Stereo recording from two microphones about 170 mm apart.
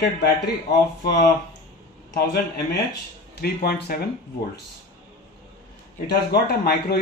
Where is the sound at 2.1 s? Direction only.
70° left (ahead or behind).